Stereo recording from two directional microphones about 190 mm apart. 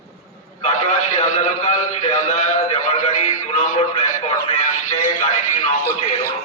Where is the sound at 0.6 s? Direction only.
40° left (ahead or behind).